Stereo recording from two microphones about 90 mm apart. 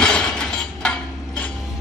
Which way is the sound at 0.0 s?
5° left (ahead or behind).